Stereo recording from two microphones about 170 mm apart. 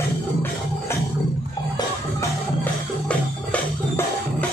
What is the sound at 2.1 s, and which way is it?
Music, 10° left (ahead or behind).